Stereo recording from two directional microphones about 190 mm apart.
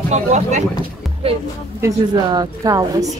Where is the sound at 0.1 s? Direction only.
40° right (ahead or behind).